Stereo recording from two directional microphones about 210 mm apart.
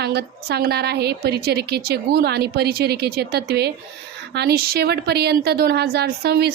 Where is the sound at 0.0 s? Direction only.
50° right (ahead or behind).